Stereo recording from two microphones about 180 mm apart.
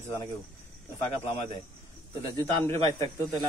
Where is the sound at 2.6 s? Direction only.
15° left (ahead or behind).